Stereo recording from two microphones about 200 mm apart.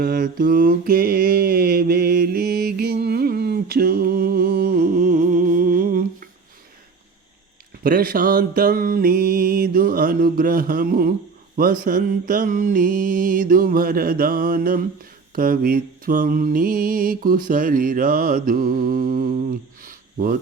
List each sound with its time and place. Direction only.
0.0 s mantra: 45° right (ahead or behind)
7.9 s mantra: 45° right (ahead or behind)